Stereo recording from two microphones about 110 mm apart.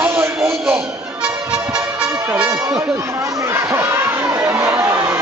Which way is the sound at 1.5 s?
10° right (ahead or behind).